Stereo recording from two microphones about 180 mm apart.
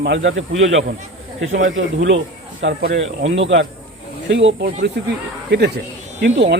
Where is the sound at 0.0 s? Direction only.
85° right.